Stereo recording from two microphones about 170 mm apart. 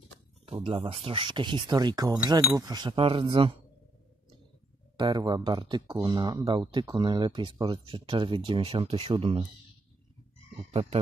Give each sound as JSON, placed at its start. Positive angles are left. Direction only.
{"t": 0.5, "sound": "speech", "side_deg": -35}
{"t": 4.9, "sound": "speech", "side_deg": -20}
{"t": 10.7, "sound": "speech", "side_deg": -30}